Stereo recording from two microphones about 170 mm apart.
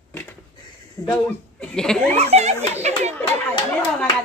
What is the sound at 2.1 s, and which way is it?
Speech, 40° right (ahead or behind).